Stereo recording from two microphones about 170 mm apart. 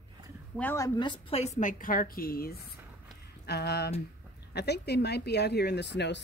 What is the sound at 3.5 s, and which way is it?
Speech, 70° left (ahead or behind).